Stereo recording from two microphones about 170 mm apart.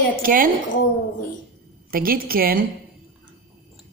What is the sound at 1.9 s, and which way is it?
Speech, 60° right (ahead or behind).